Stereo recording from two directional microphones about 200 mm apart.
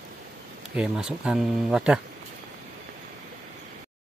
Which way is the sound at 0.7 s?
5° right (ahead or behind).